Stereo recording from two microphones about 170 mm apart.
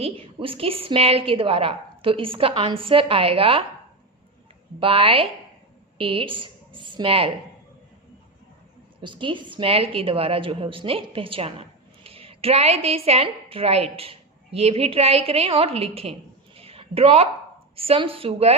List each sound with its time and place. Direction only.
0.0 s a woman's voice: 30° right (ahead or behind)
4.8 s a woman's voice: 30° right (ahead or behind)
9.0 s a woman's voice: 30° right (ahead or behind)
16.6 s a sound: 35° right (ahead or behind)
17.7 s a woman's voice: 35° right (ahead or behind)